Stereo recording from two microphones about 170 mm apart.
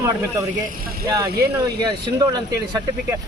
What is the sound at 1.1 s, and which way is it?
Speech, 20° right (ahead or behind).